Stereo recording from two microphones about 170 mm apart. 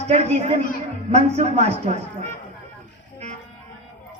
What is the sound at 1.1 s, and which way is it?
Speech, 40° right (ahead or behind).